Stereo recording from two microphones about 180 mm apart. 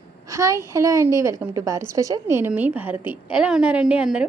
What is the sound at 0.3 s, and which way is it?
A woman's voice, 20° right (ahead or behind).